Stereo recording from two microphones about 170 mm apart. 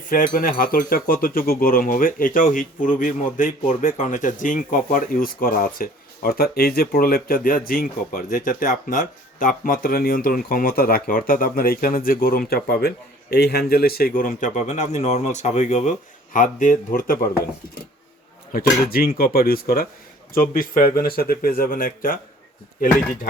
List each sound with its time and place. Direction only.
0.1 s a man's voice: 55° left (ahead or behind)
18.5 s speech: 60° left (ahead or behind)